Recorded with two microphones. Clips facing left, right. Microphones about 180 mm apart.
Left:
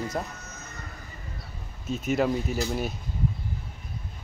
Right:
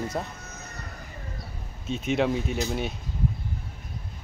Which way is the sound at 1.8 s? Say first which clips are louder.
Even; 5° left (ahead or behind).